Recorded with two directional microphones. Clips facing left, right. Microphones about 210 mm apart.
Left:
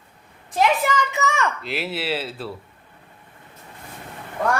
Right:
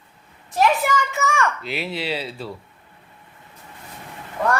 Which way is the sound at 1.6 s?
Centre (ahead or behind).